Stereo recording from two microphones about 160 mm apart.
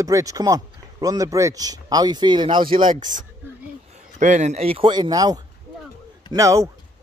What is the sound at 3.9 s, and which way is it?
Speech, 45° right (ahead or behind).